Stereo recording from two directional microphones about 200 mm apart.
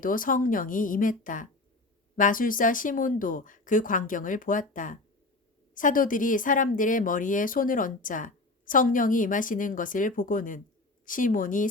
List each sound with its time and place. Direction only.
0.0 s a woman's voice: 45° left (ahead or behind)